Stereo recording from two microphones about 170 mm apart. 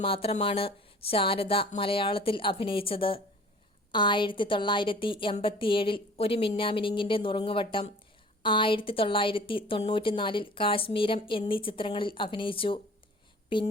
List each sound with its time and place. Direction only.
0.0 s a woman's voice: 35° left (ahead or behind)